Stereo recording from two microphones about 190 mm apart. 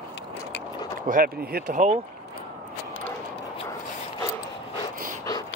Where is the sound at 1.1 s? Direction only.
50° right (ahead or behind).